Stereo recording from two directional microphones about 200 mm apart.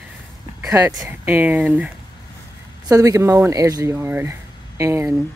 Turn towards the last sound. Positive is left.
turn(degrees=-10)  # may be behind; listen again after turning